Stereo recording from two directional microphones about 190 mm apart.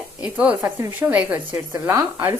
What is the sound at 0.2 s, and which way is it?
A woman's voice, 5° right (ahead or behind).